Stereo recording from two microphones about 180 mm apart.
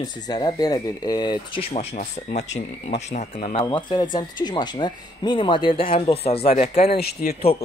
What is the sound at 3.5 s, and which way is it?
Speech, 25° left (ahead or behind).